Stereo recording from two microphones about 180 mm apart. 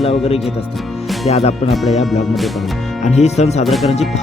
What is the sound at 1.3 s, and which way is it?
Speech, 35° left (ahead or behind).